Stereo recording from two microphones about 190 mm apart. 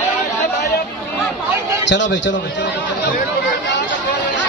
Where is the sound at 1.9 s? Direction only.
70° left (ahead or behind).